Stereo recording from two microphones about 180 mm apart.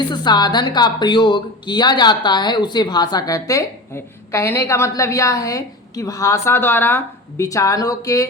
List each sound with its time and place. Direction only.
0.0 s speech: 25° left (ahead or behind)